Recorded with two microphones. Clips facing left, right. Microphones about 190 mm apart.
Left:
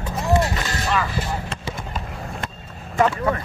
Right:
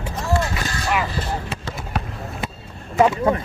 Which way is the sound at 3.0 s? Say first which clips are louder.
Right 3 dB; 20° right (ahead or behind).